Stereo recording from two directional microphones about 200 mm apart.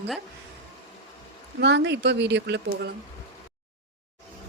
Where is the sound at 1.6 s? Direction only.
60° right (ahead or behind).